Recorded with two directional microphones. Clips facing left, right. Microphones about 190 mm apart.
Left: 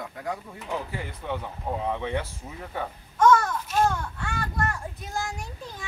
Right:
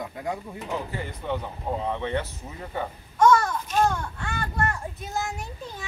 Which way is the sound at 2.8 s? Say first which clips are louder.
Right 1 dB; 10° right (ahead or behind).